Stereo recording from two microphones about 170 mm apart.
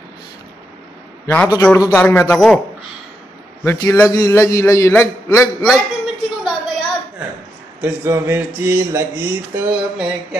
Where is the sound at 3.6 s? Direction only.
15° left (ahead or behind).